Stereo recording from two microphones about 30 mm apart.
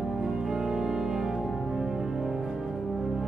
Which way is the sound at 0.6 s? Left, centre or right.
Centre.